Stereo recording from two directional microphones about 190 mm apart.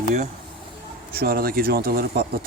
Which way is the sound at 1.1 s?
50° right (ahead or behind).